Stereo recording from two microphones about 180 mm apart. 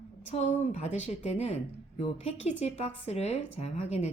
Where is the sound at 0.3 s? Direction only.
35° left (ahead or behind).